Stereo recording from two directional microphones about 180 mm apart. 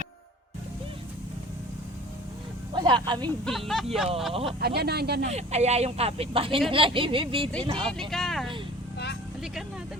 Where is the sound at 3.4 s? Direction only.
Centre (ahead or behind).